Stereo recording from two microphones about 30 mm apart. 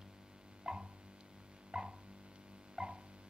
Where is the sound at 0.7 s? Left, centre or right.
Right.